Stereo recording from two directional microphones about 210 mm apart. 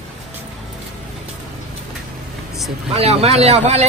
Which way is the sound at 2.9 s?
30° right (ahead or behind).